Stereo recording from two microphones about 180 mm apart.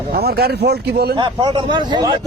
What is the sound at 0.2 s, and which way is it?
Speech, 60° right (ahead or behind).